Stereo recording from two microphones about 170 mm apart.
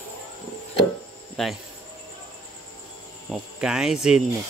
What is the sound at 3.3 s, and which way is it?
Speech, 5° right (ahead or behind).